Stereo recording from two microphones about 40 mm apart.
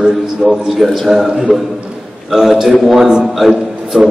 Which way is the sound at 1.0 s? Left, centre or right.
Centre.